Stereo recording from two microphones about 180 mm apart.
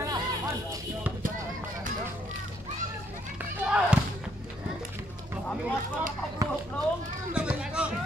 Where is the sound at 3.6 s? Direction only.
5° right (ahead or behind).